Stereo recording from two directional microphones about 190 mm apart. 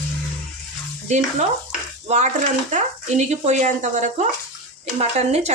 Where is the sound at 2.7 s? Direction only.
40° right (ahead or behind).